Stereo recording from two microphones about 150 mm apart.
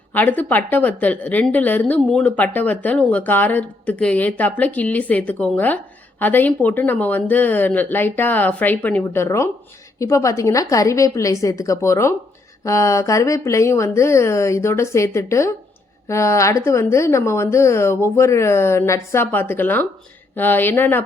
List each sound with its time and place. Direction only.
0.1 s speech: 10° left (ahead or behind)